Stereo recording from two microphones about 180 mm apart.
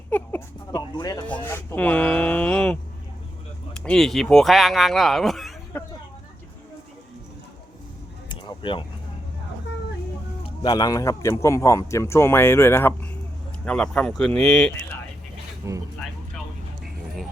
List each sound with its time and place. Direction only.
0.1 s a sound: 10° left (ahead or behind)
0.8 s speech: 20° left (ahead or behind); by 2.7 s 5° left (ahead or behind)
3.8 s speech: 5° left (ahead or behind)
8.3 s a sound: 25° left (ahead or behind)
10.4 s speech: 25° left (ahead or behind); by 14.7 s 5° left (ahead or behind)
15.6 s speech: 15° right (ahead or behind)